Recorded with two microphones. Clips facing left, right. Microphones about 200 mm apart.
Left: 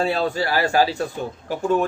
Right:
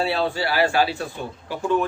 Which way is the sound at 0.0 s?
45° left (ahead or behind).